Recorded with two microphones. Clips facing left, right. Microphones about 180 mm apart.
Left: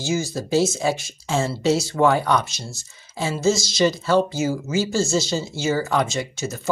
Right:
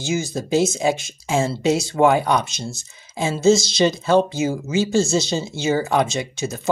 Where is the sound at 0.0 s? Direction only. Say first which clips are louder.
Right 1 dB; 20° right (ahead or behind).